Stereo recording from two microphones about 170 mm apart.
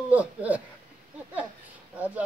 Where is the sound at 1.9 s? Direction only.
10° right (ahead or behind).